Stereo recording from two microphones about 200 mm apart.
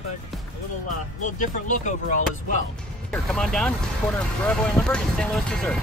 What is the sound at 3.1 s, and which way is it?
Speech, 5° left (ahead or behind).